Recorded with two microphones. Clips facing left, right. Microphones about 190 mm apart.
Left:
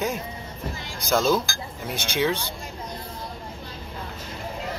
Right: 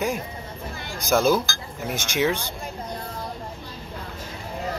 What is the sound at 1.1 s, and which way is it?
Speech, 10° right (ahead or behind).